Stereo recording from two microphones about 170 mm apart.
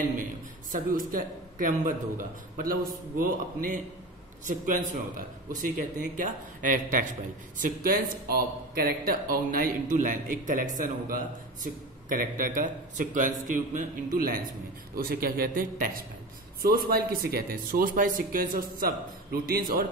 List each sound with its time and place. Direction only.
0.7 s a man's voice: 55° right (ahead or behind)